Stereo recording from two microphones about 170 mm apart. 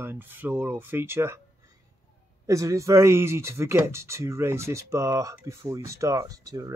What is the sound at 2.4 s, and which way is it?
Speech, 20° right (ahead or behind).